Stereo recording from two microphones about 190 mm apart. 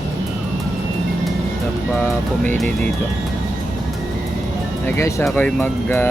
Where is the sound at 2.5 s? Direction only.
5° left (ahead or behind).